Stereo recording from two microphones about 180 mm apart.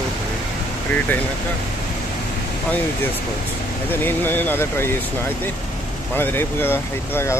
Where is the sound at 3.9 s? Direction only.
10° left (ahead or behind).